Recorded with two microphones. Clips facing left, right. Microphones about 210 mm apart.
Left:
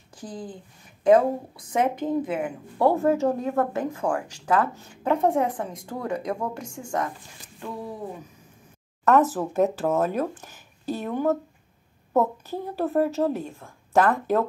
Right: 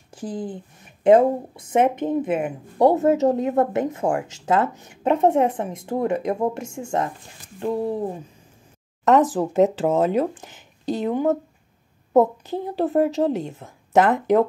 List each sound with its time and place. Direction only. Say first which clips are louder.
0.1 s speech: right 7 dB; 25° right (ahead or behind)
9.0 s speech: right 3 dB; 15° right (ahead or behind)